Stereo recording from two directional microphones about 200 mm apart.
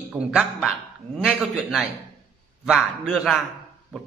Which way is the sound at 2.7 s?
Centre (ahead or behind).